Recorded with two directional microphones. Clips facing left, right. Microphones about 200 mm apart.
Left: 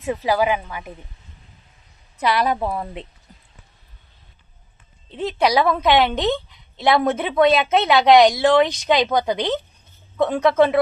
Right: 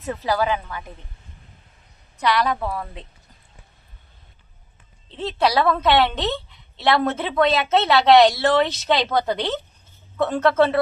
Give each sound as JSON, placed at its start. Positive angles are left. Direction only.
{"t": 0.0, "sound": "a woman's voice", "side_deg": 15}
{"t": 2.1, "sound": "a woman's voice", "side_deg": 25}
{"t": 5.1, "sound": "a woman's voice", "side_deg": 15}
{"t": 9.3, "sound": "speech", "side_deg": 0}
{"t": 10.2, "sound": "a woman's voice", "side_deg": 15}